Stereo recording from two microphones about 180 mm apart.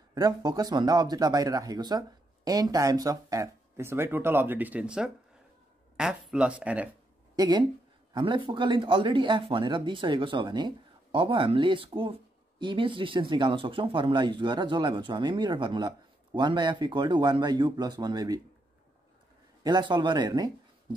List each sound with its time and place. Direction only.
0.1 s speech: 20° right (ahead or behind)
7.3 s speech: 25° right (ahead or behind)
19.6 s speech: 25° right (ahead or behind)